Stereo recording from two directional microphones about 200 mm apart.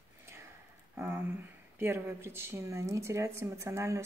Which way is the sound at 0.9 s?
10° right (ahead or behind).